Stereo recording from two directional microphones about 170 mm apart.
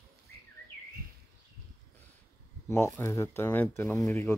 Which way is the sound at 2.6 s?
15° left (ahead or behind).